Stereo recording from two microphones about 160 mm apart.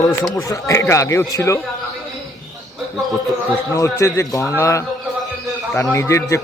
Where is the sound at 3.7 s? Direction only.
20° left (ahead or behind).